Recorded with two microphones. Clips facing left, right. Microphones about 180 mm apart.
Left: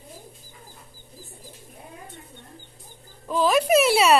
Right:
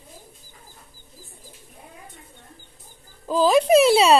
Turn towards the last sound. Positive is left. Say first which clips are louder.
# right 3 dB
turn(degrees=-25)  # may be behind; listen again after turning